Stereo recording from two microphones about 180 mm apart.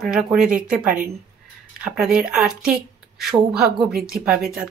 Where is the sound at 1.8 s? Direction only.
5° right (ahead or behind).